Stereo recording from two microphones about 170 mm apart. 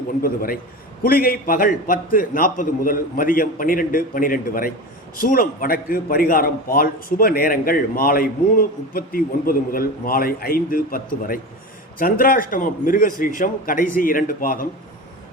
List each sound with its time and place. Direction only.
0.2 s a man's voice: 60° left (ahead or behind)